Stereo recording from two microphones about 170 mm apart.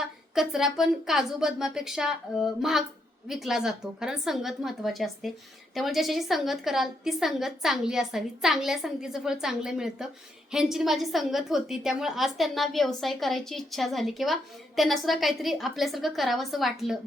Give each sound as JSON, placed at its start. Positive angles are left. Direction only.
{"t": 0.0, "sound": "a woman's voice", "side_deg": 0}